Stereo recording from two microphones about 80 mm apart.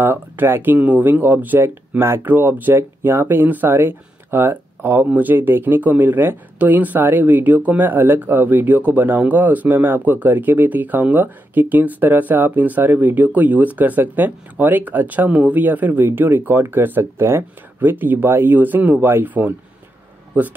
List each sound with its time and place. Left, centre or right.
0.0 s speech: right